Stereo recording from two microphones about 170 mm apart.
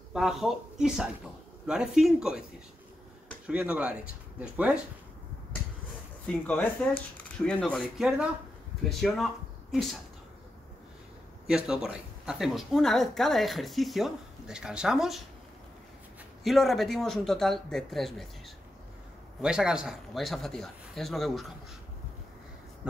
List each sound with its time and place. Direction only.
0.1 s speech: centre (ahead or behind)
3.4 s speech: 5° right (ahead or behind)
6.2 s speech: 10° left (ahead or behind)
11.4 s speech: 5° right (ahead or behind)
16.4 s speech: centre (ahead or behind)
19.4 s speech: 5° right (ahead or behind)